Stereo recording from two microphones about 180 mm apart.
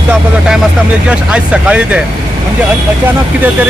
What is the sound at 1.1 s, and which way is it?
Speech, 5° right (ahead or behind).